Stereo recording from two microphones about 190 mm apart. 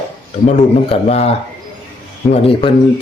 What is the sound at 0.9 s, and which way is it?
A man's voice, 35° left (ahead or behind).